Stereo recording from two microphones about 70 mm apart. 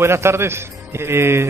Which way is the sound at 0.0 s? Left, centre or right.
Right.